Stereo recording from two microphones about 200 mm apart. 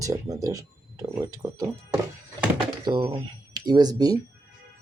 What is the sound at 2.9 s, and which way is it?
Speech, 25° right (ahead or behind).